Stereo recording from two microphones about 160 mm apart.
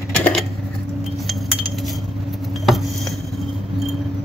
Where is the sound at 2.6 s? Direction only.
Centre (ahead or behind).